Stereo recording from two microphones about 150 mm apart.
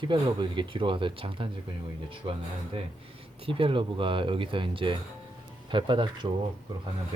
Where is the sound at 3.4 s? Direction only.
35° right (ahead or behind).